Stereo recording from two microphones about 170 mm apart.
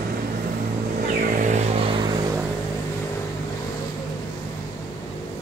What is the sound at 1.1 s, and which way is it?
Vehicle, 55° right (ahead or behind).